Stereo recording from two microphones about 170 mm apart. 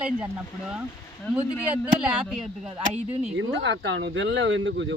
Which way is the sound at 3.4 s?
90° right.